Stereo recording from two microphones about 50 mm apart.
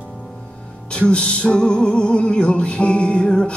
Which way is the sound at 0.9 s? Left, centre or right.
Left.